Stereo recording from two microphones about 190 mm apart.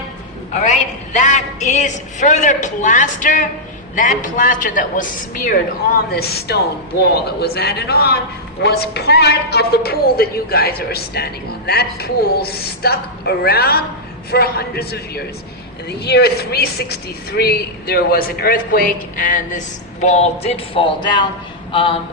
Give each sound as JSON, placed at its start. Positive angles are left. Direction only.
{"t": 0.5, "sound": "a woman's voice", "side_deg": 40}
{"t": 6.1, "sound": "a woman's voice", "side_deg": 55}